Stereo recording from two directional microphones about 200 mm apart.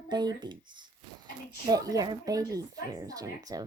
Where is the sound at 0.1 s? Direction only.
20° right (ahead or behind).